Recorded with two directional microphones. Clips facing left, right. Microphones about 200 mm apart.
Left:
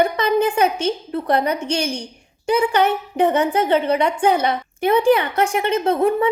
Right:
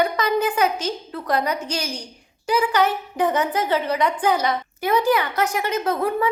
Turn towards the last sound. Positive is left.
turn(degrees=25)  # may be behind; listen again after turning